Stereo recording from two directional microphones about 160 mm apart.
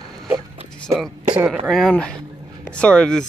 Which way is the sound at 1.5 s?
Centre (ahead or behind).